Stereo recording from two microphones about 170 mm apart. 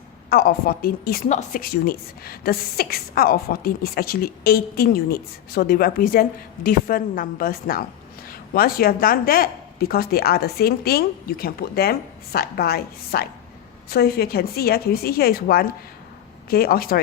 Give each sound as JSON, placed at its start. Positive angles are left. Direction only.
{"t": 0.3, "sound": "speech", "side_deg": 60}
{"t": 1.3, "sound": "speech", "side_deg": 50}